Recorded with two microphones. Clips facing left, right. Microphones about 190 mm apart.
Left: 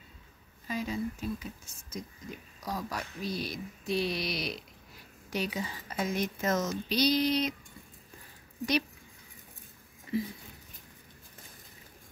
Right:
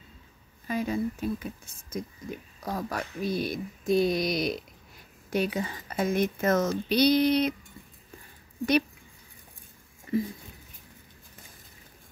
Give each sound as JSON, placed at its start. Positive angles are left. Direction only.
{"t": 0.7, "sound": "speech", "side_deg": -55}
{"t": 10.1, "sound": "speech", "side_deg": -50}